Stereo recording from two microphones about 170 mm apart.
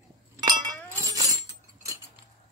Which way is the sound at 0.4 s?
25° right (ahead or behind).